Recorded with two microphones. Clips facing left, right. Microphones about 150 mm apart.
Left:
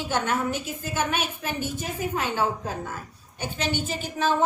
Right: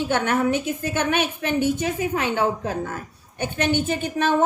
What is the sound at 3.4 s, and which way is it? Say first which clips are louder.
A woman's voice: right 6 dB; 60° right (ahead or behind).